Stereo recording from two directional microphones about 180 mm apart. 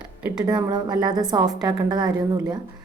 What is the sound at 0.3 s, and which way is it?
A woman's voice, 20° right (ahead or behind).